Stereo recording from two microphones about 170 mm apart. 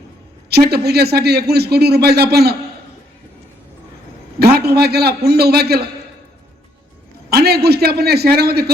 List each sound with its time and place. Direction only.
0.5 s speech: 70° right (ahead or behind)
4.4 s a man's voice: 65° right (ahead or behind)
7.3 s speech: 70° right (ahead or behind)